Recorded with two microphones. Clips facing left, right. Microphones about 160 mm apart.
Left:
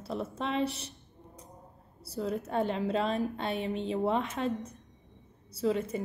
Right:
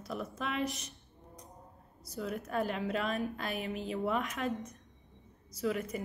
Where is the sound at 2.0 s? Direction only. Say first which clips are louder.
Left 5 dB; 30° left (ahead or behind).